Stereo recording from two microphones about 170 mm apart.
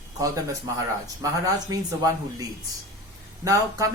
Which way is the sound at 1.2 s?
20° right (ahead or behind).